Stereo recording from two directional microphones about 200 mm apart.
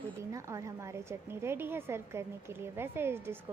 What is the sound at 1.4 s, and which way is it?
Speech, 10° right (ahead or behind).